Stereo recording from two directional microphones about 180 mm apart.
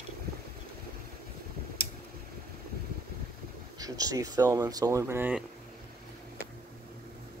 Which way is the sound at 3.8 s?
20° right (ahead or behind).